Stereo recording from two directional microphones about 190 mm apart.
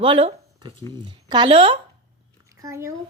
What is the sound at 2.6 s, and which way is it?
Speech, 15° right (ahead or behind).